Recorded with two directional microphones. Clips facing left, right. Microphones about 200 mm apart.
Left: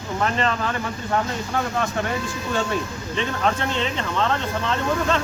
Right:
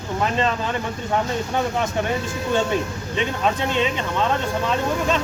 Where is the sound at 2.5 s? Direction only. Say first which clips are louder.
Right 3 dB; 20° right (ahead or behind).